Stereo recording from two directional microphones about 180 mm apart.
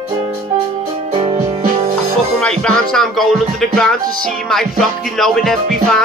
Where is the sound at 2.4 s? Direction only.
5° left (ahead or behind).